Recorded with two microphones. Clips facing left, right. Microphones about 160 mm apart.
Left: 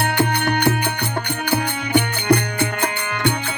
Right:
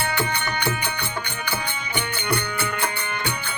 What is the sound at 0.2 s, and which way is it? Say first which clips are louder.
Music: left 7 dB; 70° left (ahead or behind).